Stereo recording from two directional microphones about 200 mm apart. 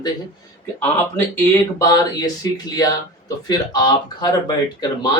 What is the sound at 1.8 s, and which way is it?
Speech, 20° left (ahead or behind).